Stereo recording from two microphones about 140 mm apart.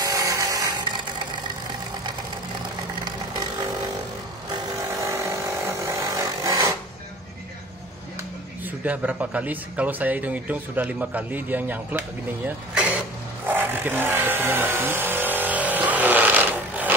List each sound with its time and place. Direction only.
0.0 s a sound: 20° right (ahead or behind)
5.0 s tools: 20° right (ahead or behind)
8.6 s a man's voice: 10° right (ahead or behind)
12.4 s vehicle: 10° right (ahead or behind)